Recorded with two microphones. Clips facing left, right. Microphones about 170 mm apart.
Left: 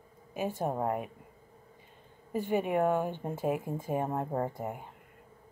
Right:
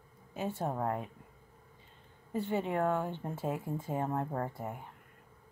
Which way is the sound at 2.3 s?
15° left (ahead or behind).